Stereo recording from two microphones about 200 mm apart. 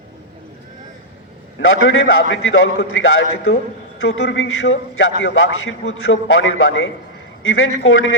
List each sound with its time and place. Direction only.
1.5 s a man's voice: 85° left